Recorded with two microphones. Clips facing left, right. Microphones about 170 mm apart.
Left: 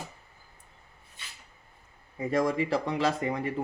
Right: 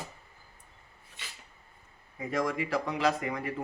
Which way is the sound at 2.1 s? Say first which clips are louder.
Left 4 dB; 30° left (ahead or behind).